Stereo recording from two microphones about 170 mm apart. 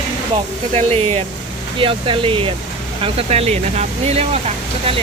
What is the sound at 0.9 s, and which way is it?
Speech, 35° right (ahead or behind).